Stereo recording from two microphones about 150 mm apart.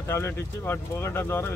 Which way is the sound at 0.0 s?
15° left (ahead or behind).